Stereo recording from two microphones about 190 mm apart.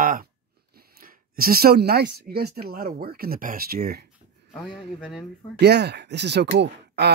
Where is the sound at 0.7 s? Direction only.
50° right (ahead or behind).